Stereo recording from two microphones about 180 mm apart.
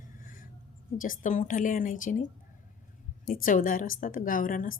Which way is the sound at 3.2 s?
50° left (ahead or behind).